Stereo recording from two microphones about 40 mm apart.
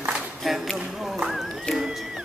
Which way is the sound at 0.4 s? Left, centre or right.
Centre.